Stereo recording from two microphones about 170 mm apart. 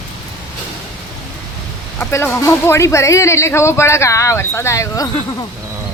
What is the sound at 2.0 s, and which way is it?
Speech, 15° left (ahead or behind).